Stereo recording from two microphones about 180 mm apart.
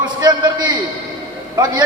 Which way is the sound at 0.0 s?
25° right (ahead or behind).